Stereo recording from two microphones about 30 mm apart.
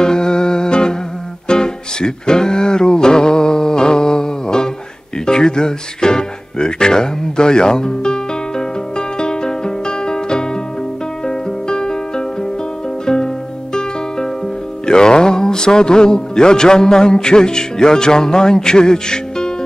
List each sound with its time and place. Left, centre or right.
0.0 s music: left
14.9 s speech: left